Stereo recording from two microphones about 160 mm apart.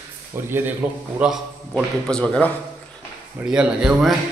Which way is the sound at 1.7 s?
5° left (ahead or behind).